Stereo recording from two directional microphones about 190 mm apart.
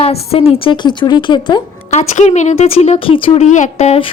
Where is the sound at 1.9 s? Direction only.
40° left (ahead or behind).